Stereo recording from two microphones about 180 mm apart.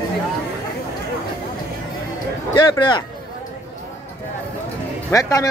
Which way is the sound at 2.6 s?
25° left (ahead or behind).